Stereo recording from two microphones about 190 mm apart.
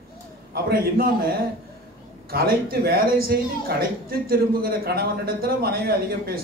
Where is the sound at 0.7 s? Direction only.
50° right (ahead or behind).